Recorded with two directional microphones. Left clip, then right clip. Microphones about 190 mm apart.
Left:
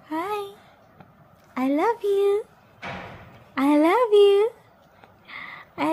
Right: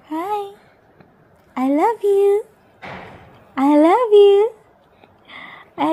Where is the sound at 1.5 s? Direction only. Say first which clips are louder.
Right 5 dB; 5° right (ahead or behind).